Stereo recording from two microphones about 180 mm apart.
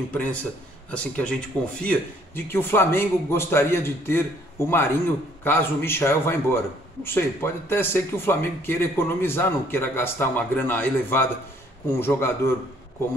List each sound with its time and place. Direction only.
0.1 s a man's voice: 10° left (ahead or behind)